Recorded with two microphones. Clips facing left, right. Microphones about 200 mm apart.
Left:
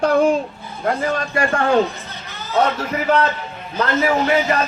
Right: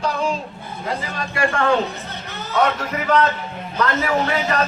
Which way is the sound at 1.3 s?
35° left (ahead or behind).